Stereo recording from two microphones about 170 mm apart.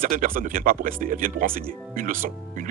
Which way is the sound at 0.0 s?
50° right (ahead or behind).